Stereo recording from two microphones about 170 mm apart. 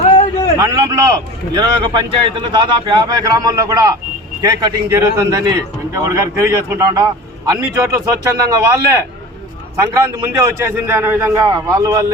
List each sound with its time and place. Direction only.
0.6 s a man's voice: 20° right (ahead or behind)